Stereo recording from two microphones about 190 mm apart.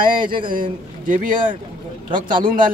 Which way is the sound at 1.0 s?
45° right (ahead or behind).